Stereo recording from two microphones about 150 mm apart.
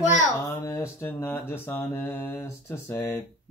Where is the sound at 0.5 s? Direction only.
20° left (ahead or behind).